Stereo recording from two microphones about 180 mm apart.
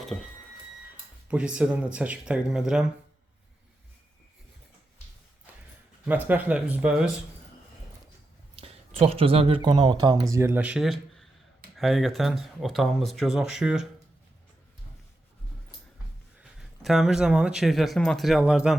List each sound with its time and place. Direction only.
0.1 s speech: 5° left (ahead or behind)
1.3 s speech: 5° right (ahead or behind)
6.1 s speech: 10° right (ahead or behind)
8.5 s speech: 30° right (ahead or behind); by 13.8 s 5° right (ahead or behind)
16.6 s speech: centre (ahead or behind)